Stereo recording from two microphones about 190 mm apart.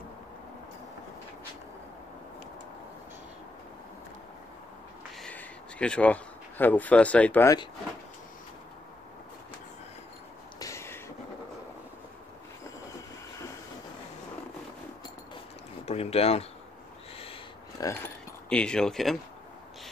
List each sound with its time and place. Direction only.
5.2 s speech: 5° left (ahead or behind)
10.6 s a sound: 15° left (ahead or behind)
15.8 s boat: 35° left (ahead or behind)
17.8 s speech: 20° left (ahead or behind)
18.5 s speech: 5° left (ahead or behind)